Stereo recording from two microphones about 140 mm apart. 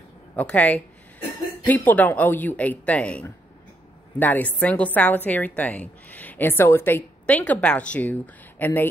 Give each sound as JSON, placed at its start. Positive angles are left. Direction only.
{"t": 0.4, "sound": "a woman's voice", "side_deg": 10}